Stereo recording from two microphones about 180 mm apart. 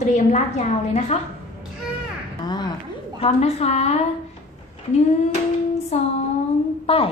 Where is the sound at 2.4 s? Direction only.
25° left (ahead or behind).